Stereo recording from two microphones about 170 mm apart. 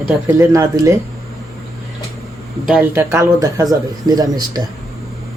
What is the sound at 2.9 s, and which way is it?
Speech, 15° right (ahead or behind).